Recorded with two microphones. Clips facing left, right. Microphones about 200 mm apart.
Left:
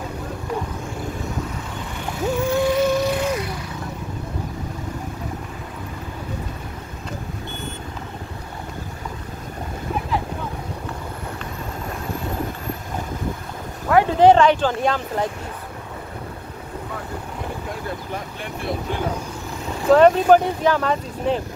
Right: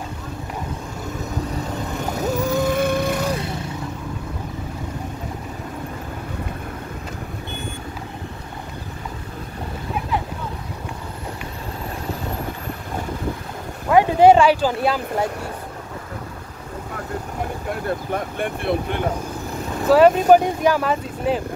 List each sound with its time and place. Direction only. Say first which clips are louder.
2.0 s vehicle: left 1 dB; 40° right (ahead or behind)
13.8 s speech: right 1 dB; 15° right (ahead or behind)
18.1 s speech: right 6 dB; 55° right (ahead or behind)
19.9 s speech: even; 10° right (ahead or behind)